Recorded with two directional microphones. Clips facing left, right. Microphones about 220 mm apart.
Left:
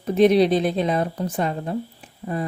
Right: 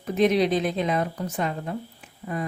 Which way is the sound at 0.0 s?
35° left (ahead or behind).